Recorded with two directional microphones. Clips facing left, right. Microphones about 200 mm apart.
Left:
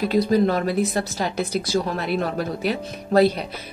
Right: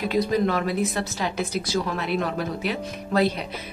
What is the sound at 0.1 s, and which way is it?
Speech, 35° left (ahead or behind).